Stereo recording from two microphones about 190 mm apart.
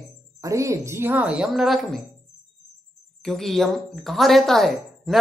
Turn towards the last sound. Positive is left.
turn(degrees=0)  # may be behind; listen again after turning